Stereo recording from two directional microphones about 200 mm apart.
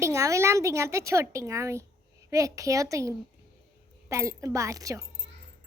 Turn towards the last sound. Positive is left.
turn(degrees=-15)  # may be behind; listen again after turning